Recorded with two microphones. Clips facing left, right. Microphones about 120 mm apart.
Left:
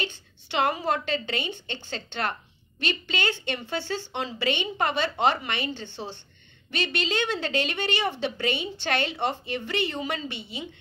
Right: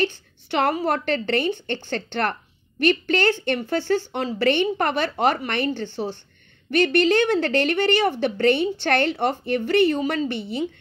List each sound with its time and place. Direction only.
0.0 s a woman's voice: 50° right (ahead or behind)